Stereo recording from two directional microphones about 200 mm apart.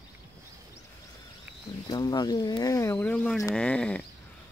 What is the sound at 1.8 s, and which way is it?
Speech, 20° left (ahead or behind).